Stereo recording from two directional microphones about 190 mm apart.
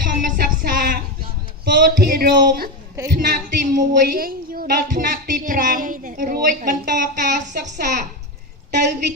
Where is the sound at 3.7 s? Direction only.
55° right (ahead or behind).